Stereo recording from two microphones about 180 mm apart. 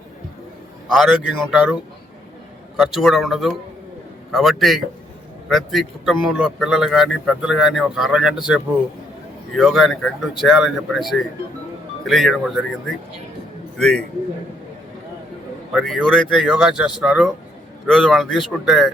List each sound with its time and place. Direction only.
0.9 s a man's voice: 5° right (ahead or behind)
2.7 s a man's voice: centre (ahead or behind)
15.7 s a man's voice: centre (ahead or behind)